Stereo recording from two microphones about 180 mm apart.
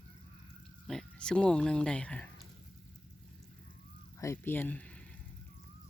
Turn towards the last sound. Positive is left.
turn(degrees=5)  # may be behind; listen again after turning